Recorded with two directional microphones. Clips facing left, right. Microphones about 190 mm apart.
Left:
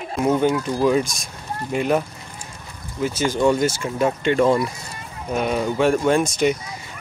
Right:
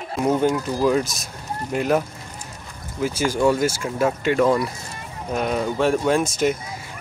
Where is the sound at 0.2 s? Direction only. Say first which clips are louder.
Left 1 dB; centre (ahead or behind).